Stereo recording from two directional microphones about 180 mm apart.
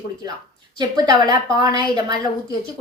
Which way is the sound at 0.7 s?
25° right (ahead or behind).